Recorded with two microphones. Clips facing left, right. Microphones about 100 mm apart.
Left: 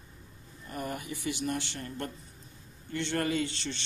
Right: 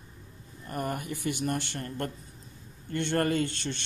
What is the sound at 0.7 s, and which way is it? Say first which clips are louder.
Speech: right 4 dB; 50° right (ahead or behind).